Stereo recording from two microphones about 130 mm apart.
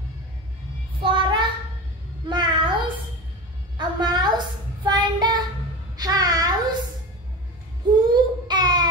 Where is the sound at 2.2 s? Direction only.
35° right (ahead or behind).